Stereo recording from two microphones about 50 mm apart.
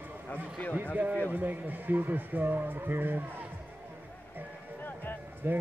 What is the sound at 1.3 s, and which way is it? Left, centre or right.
Speech, right.